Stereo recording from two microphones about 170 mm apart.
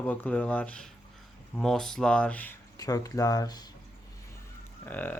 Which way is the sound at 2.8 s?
20° left (ahead or behind).